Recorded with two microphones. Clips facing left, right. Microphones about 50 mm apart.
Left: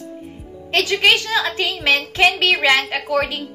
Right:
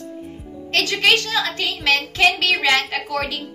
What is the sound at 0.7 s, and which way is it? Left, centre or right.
A woman's voice, centre.